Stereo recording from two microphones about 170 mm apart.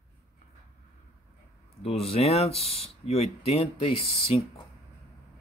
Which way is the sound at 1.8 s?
35° left (ahead or behind).